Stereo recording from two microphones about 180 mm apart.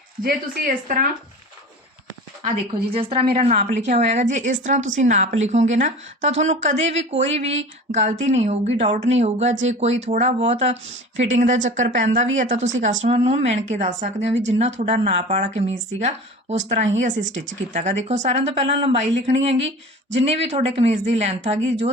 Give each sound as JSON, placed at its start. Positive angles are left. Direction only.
{"t": 0.2, "sound": "speech", "side_deg": -55}
{"t": 2.9, "sound": "a woman's voice", "side_deg": -30}